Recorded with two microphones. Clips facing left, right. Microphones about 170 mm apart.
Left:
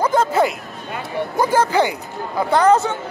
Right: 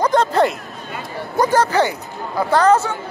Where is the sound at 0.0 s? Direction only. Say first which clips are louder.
Right 1 dB; 5° left (ahead or behind).